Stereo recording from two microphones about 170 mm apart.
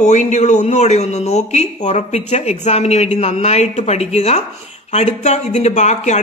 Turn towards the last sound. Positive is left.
turn(degrees=45)  # may be behind; listen again after turning